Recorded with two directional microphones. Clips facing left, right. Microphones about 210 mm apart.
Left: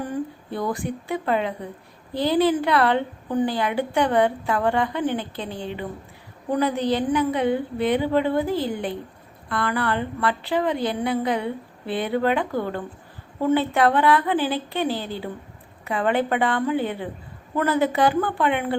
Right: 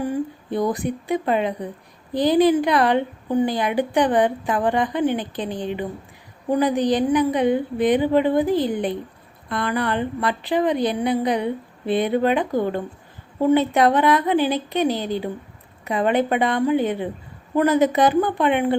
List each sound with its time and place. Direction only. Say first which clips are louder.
0.0 s a woman's voice: right 4 dB; 15° right (ahead or behind)